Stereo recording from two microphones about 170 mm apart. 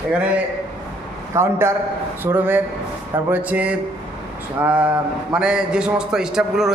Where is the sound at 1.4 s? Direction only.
15° right (ahead or behind).